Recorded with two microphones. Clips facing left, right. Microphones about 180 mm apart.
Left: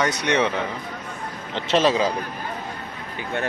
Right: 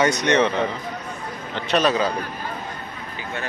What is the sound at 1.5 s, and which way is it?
Speech, 25° left (ahead or behind).